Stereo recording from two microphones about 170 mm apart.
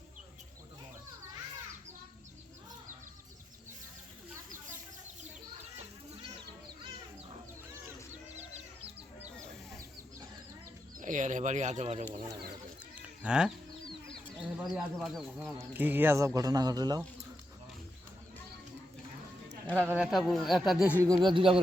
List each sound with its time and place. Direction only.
8.4 s chicken: 40° right (ahead or behind)
10.9 s speech: 50° right (ahead or behind)
13.0 s chicken: 5° right (ahead or behind)
14.6 s speech: centre (ahead or behind)
15.7 s speech: 10° right (ahead or behind)
19.6 s speech: 5° left (ahead or behind)
19.9 s speech: 5° right (ahead or behind)
21.2 s speech: 30° right (ahead or behind)